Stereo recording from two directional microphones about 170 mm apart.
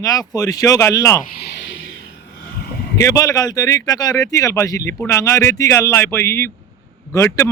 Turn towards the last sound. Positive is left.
turn(degrees=15)  # may be behind; listen again after turning